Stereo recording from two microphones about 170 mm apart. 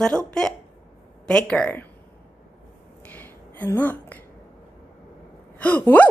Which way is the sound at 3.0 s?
10° left (ahead or behind).